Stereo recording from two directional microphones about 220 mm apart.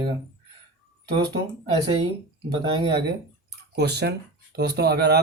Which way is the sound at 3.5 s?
45° right (ahead or behind).